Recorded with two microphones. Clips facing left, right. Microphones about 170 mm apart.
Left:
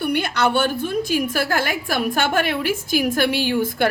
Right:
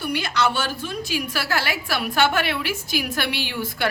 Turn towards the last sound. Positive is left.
turn(degrees=50)  # may be behind; listen again after turning